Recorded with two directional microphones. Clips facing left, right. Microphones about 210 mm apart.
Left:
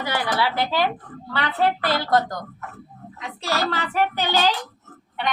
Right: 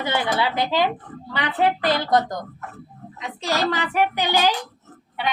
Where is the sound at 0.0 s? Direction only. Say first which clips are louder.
Right 1 dB; 20° right (ahead or behind).